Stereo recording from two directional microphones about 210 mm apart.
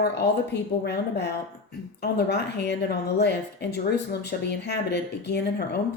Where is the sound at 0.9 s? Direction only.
50° left (ahead or behind).